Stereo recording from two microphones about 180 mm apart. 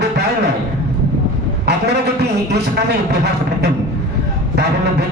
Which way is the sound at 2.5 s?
65° right (ahead or behind).